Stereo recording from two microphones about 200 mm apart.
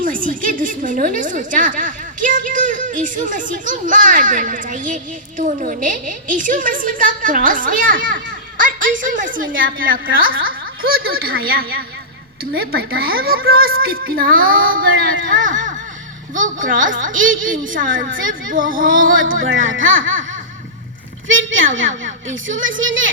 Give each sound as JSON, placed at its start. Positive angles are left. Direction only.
{"t": 0.0, "sound": "a woman's voice", "side_deg": -45}
{"t": 19.4, "sound": "a woman's voice", "side_deg": -75}
{"t": 21.2, "sound": "a woman's voice", "side_deg": -75}